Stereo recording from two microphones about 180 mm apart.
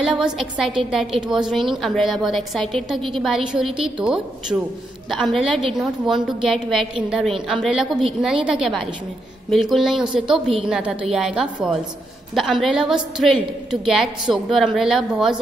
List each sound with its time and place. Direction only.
0.0 s a woman's voice: 5° right (ahead or behind)